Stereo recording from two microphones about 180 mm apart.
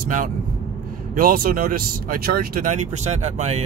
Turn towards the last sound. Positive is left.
turn(degrees=-40)  # may be behind; listen again after turning